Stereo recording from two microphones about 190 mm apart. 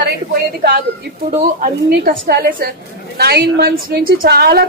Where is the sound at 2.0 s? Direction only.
55° right (ahead or behind).